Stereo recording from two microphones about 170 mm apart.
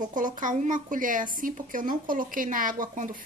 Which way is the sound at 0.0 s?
50° right (ahead or behind).